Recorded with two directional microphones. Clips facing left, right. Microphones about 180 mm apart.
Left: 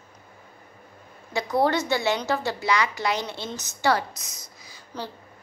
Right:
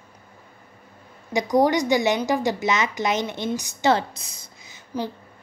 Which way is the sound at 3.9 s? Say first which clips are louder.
Right 3 dB; 30° right (ahead or behind).